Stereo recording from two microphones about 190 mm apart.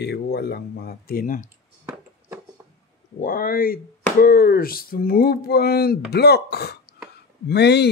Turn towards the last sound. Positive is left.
turn(degrees=60)  # may be behind; listen again after turning